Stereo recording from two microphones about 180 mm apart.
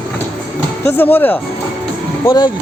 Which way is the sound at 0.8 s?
10° left (ahead or behind).